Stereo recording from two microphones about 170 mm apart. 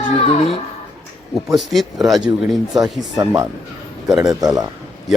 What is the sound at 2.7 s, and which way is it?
Speech, 20° right (ahead or behind).